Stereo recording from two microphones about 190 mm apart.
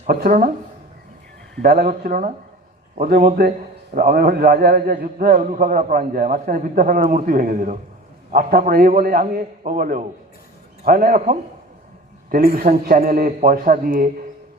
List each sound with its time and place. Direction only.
0.1 s a man's voice: 50° right (ahead or behind)
1.6 s a man's voice: 55° right (ahead or behind)